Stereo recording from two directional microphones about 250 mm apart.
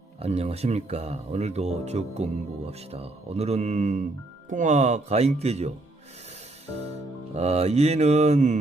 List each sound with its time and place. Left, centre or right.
0.2 s speech: right
7.3 s speech: right